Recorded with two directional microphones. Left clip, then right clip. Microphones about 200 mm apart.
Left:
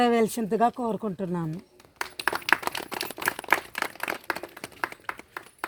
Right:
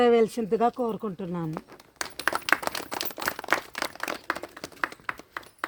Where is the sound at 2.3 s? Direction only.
15° right (ahead or behind).